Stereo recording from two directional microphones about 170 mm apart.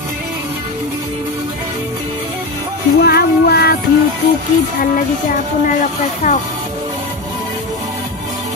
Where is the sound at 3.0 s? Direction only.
70° left (ahead or behind).